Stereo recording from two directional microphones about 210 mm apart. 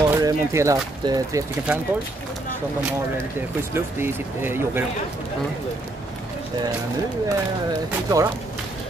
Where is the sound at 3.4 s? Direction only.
10° right (ahead or behind).